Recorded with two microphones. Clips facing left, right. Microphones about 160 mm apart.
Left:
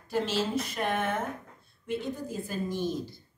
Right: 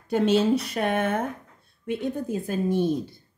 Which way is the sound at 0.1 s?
65° right (ahead or behind).